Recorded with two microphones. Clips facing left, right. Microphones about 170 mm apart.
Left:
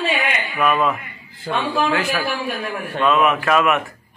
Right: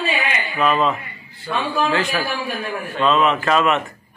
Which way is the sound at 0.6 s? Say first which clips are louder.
Even; 20° right (ahead or behind).